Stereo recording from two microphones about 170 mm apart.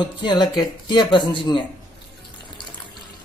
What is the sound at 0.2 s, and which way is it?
Speech, 25° left (ahead or behind).